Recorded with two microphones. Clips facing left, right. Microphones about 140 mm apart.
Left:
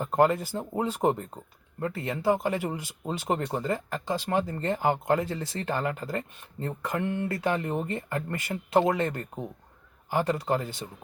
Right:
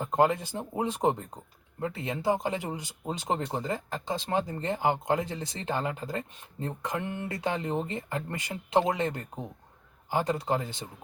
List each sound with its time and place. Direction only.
0.0 s speech: 15° right (ahead or behind)